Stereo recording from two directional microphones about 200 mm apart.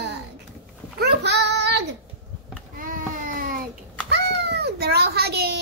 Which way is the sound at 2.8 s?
40° right (ahead or behind).